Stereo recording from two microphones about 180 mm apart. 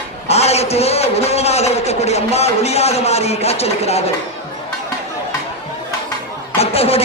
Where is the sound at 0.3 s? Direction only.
35° left (ahead or behind).